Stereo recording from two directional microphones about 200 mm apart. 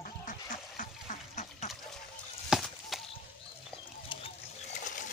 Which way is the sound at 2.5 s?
Centre (ahead or behind).